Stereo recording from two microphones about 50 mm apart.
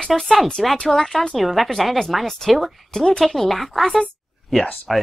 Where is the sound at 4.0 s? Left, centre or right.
Centre.